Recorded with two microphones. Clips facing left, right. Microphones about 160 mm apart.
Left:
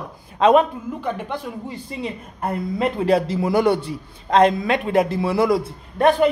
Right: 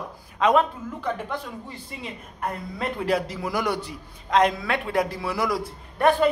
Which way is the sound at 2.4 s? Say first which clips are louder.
Left 7 dB; 25° left (ahead or behind).